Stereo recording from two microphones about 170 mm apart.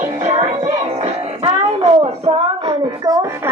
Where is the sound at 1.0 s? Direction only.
35° right (ahead or behind).